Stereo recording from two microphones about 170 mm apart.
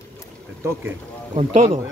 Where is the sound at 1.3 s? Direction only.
45° right (ahead or behind).